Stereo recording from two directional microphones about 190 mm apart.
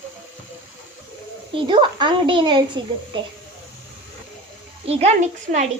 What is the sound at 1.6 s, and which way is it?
Speech, 25° right (ahead or behind).